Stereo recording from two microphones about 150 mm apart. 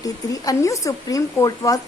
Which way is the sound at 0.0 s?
20° left (ahead or behind).